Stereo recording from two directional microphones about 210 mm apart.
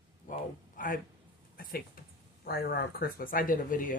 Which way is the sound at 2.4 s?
45° left (ahead or behind).